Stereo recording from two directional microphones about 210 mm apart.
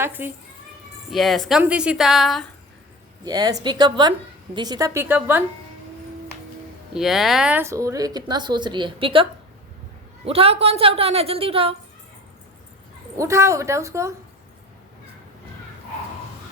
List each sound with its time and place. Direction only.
0.0 s speech: 10° right (ahead or behind)
3.2 s a woman's voice: 20° right (ahead or behind)
6.9 s speech: centre (ahead or behind); by 9.2 s 25° right (ahead or behind)
10.2 s a woman's voice: 25° right (ahead or behind)
13.1 s speech: 15° right (ahead or behind)